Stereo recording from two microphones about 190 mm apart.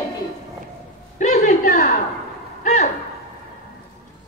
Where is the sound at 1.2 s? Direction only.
40° left (ahead or behind).